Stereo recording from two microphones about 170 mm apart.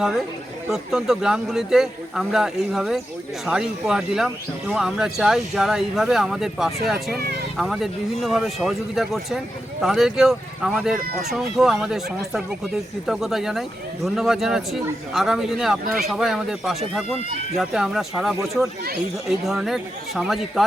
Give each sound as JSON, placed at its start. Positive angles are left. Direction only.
{"t": 0.7, "sound": "speech", "side_deg": -5}
{"t": 7.2, "sound": "speech", "side_deg": -65}
{"t": 7.5, "sound": "speech", "side_deg": 0}